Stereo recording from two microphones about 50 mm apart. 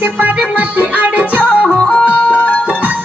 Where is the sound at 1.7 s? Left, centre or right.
Centre.